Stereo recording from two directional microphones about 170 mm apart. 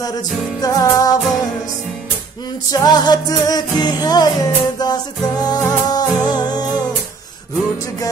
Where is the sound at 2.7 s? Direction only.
25° left (ahead or behind).